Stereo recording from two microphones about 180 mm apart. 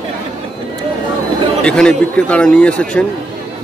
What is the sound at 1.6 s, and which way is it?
Speech, 5° left (ahead or behind).